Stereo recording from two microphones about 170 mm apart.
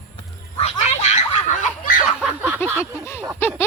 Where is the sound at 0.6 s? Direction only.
40° left (ahead or behind).